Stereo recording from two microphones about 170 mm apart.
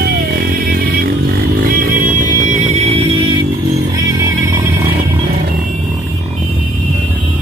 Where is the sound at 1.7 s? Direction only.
60° right (ahead or behind); by 3.0 s 40° right (ahead or behind).